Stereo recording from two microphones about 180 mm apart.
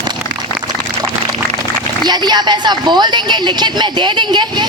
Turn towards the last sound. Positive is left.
turn(degrees=-25)  # may be behind; listen again after turning